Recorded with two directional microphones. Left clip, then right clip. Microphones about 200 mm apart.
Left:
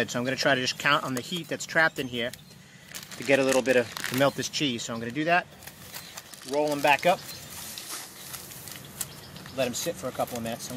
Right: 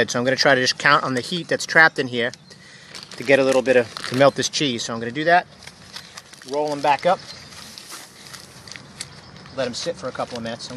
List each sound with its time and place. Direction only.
0.0 s speech: 25° right (ahead or behind)
6.6 s speech: 10° right (ahead or behind)
9.6 s speech: 5° right (ahead or behind)